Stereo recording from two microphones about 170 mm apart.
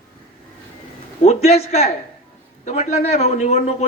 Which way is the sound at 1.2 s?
40° left (ahead or behind).